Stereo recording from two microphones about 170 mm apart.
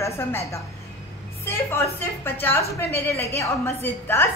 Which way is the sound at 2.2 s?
15° left (ahead or behind).